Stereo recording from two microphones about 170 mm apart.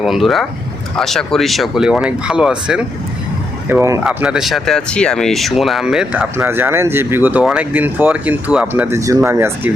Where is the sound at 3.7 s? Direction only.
15° right (ahead or behind).